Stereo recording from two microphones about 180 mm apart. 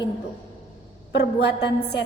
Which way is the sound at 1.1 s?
70° left (ahead or behind).